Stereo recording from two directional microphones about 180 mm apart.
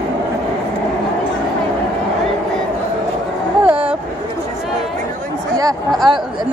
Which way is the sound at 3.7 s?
5° right (ahead or behind).